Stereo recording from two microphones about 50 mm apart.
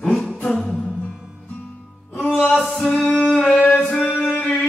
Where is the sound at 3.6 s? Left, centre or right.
Left.